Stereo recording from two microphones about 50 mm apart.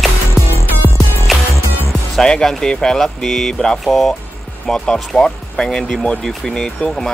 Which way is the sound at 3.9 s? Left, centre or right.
Centre.